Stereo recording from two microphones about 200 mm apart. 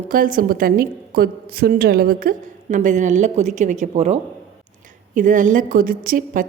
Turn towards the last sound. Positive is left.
turn(degrees=-45)  # may be behind; listen again after turning